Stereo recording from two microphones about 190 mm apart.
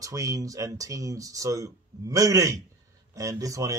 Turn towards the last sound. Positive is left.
turn(degrees=-15)  # may be behind; listen again after turning